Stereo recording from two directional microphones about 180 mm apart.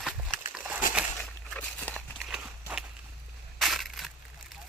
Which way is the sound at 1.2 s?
5° left (ahead or behind).